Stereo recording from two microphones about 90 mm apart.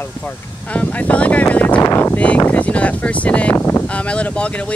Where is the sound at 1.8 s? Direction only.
25° left (ahead or behind).